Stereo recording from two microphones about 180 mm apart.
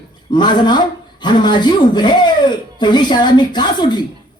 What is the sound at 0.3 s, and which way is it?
A woman's voice, 25° left (ahead or behind).